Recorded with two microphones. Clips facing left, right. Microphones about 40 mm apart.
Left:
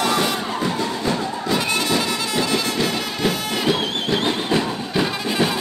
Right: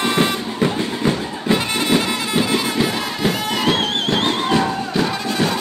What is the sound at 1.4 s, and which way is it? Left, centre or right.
Music, right.